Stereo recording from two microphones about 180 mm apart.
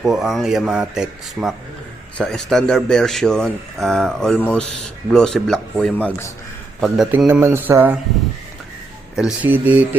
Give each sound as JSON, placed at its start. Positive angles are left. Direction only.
{"t": 0.0, "sound": "speech", "side_deg": 0}
{"t": 6.8, "sound": "speech", "side_deg": 0}
{"t": 9.1, "sound": "speech", "side_deg": -5}